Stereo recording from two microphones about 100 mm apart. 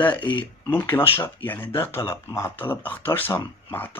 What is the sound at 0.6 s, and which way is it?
Speech, 20° left (ahead or behind).